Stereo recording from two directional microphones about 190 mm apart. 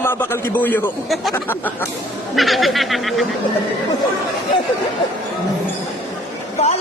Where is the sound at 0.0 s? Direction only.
10° left (ahead or behind).